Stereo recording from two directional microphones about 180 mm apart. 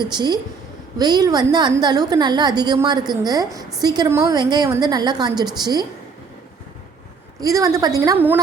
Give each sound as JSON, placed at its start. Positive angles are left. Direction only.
{"t": 0.0, "sound": "a woman's voice", "side_deg": -25}
{"t": 7.4, "sound": "a woman's voice", "side_deg": -20}